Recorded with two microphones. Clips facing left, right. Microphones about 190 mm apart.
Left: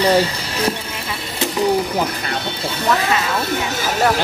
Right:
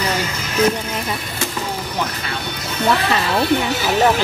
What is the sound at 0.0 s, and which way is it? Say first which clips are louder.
Music: left 7 dB; 35° left (ahead or behind).